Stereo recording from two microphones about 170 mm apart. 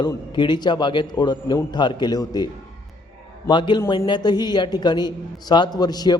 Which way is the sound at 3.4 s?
25° left (ahead or behind).